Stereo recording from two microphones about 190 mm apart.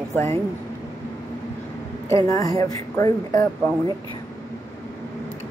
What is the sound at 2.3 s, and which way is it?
Speech, 20° left (ahead or behind).